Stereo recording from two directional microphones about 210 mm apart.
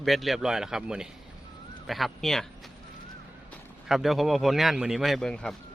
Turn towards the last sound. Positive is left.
turn(degrees=5)  # may be behind; listen again after turning